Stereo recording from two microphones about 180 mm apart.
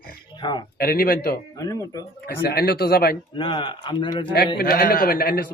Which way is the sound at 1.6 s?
20° left (ahead or behind).